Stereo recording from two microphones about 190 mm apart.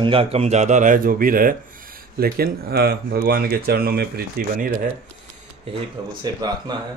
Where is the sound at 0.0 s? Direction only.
30° right (ahead or behind); by 4.6 s 50° right (ahead or behind).